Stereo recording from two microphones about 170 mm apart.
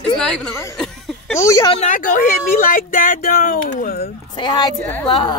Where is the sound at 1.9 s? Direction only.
55° left (ahead or behind).